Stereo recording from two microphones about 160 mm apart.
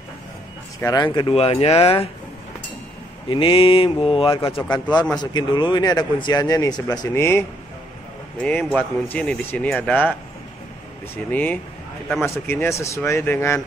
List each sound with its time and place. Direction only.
0.7 s speech: 20° left (ahead or behind); by 2.0 s 35° left (ahead or behind)
3.3 s speech: 30° left (ahead or behind); by 10.1 s 10° left (ahead or behind)
11.2 s speech: 10° left (ahead or behind)